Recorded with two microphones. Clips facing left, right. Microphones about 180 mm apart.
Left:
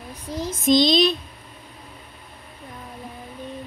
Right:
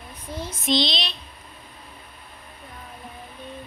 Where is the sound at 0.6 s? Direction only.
45° left (ahead or behind).